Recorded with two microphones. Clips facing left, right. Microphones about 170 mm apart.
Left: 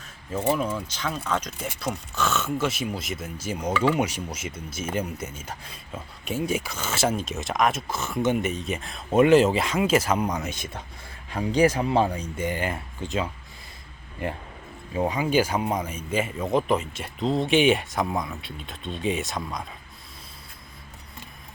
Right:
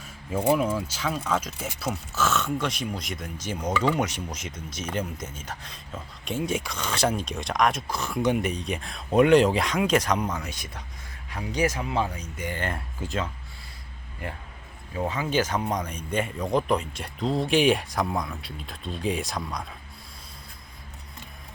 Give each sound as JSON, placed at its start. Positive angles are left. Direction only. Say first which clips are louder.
{"t": 0.4, "sound": "speech", "louder": "right 2 dB", "side_deg": -5}
{"t": 10.3, "sound": "speech", "louder": "left 4 dB", "side_deg": 25}
{"t": 12.5, "sound": "speech", "louder": "left 2 dB", "side_deg": 5}
{"t": 13.0, "sound": "speech", "louder": "left 1 dB", "side_deg": -5}
{"t": 14.9, "sound": "speech", "louder": "left 3 dB", "side_deg": 15}